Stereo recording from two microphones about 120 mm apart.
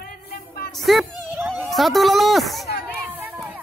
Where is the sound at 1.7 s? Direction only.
Centre (ahead or behind).